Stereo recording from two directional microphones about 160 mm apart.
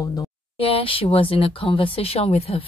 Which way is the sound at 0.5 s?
35° left (ahead or behind).